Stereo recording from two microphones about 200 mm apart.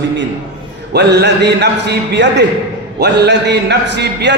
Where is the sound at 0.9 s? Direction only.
55° right (ahead or behind).